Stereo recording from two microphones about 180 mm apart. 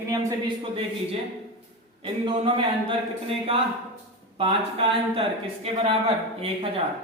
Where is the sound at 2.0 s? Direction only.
30° right (ahead or behind).